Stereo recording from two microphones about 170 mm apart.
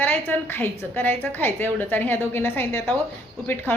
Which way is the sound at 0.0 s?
10° left (ahead or behind).